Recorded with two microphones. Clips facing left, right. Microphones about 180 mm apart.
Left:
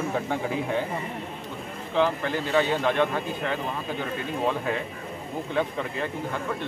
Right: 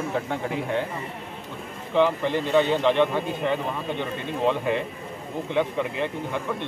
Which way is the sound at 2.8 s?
20° right (ahead or behind).